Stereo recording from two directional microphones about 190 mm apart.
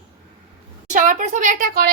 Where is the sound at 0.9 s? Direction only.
45° right (ahead or behind).